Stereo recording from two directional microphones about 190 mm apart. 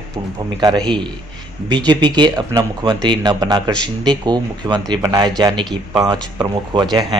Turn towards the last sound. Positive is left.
turn(degrees=-20)  # may be behind; listen again after turning